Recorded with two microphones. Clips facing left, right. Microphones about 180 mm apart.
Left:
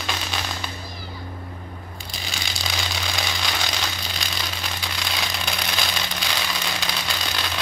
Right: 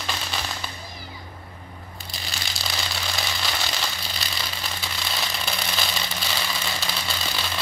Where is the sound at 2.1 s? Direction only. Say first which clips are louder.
Left 2 dB; centre (ahead or behind).